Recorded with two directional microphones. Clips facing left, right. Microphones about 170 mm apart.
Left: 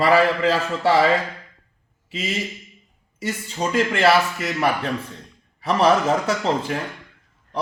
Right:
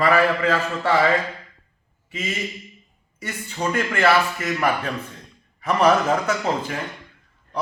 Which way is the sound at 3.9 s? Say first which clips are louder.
Even; 25° left (ahead or behind).